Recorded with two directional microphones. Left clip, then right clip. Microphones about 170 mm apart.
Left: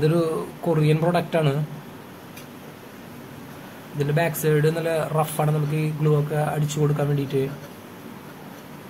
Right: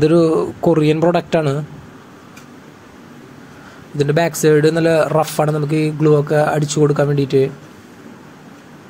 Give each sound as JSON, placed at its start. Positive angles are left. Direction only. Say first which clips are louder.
{"t": 0.0, "sound": "speech", "louder": "right 9 dB", "side_deg": -40}
{"t": 4.0, "sound": "speech", "louder": "right 8 dB", "side_deg": -35}